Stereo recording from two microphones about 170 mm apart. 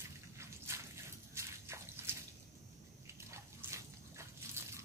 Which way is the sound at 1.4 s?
15° right (ahead or behind).